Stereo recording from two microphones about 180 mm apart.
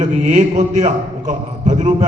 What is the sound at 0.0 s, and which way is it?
A man's voice, 40° right (ahead or behind).